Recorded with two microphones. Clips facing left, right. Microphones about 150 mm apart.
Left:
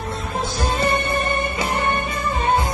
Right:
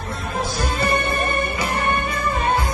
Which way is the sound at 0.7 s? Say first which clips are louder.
Left 1 dB; 25° left (ahead or behind).